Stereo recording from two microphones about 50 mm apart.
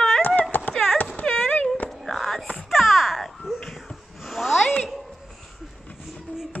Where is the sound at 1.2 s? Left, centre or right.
Centre.